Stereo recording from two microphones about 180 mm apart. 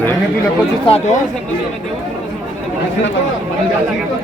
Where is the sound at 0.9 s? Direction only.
35° left (ahead or behind).